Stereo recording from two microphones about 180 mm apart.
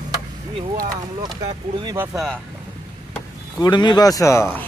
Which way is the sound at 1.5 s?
30° right (ahead or behind).